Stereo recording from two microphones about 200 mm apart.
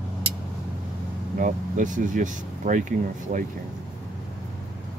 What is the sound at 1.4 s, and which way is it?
Speech, 40° right (ahead or behind).